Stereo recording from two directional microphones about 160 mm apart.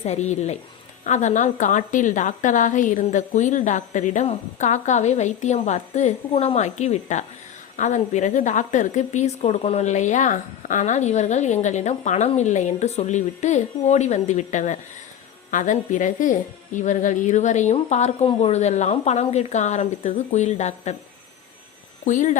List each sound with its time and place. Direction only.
0.0 s a woman's voice: 45° left (ahead or behind)
22.0 s a woman's voice: 50° left (ahead or behind)